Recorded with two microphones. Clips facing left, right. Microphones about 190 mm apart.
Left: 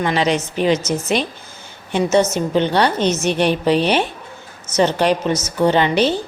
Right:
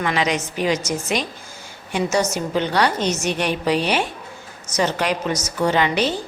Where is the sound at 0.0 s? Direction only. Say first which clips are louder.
Left 4 dB; 30° left (ahead or behind).